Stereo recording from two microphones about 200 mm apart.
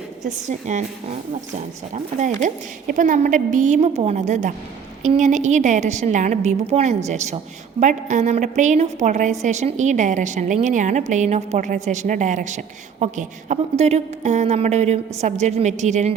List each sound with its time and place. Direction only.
0.2 s a woman's voice: 35° right (ahead or behind)